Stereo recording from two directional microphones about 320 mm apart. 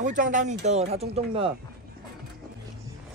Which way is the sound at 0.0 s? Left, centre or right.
Right.